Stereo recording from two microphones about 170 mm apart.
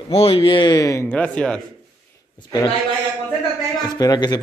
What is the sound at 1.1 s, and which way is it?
Speech, 5° left (ahead or behind).